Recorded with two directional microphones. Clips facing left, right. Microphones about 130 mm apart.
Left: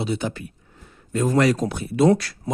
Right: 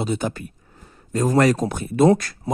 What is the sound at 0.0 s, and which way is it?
Speech, 45° right (ahead or behind).